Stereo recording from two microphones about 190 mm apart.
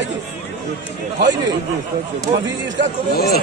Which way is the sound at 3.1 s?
55° left (ahead or behind).